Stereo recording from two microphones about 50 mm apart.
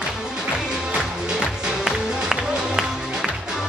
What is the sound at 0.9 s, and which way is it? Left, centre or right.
Music, centre.